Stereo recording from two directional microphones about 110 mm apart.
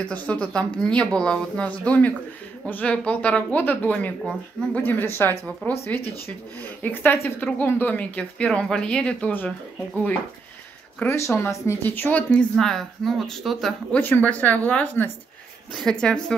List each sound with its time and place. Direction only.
0.0 s speech: 10° left (ahead or behind)
11.0 s speech: 25° left (ahead or behind); by 13.7 s centre (ahead or behind)
13.9 s a woman's voice: 15° left (ahead or behind)